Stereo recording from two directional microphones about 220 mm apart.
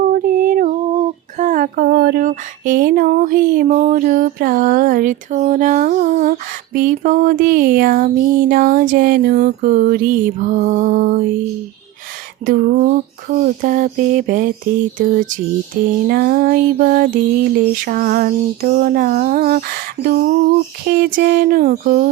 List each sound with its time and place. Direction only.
0.1 s female singing: 40° right (ahead or behind)
12.5 s female singing: 40° right (ahead or behind)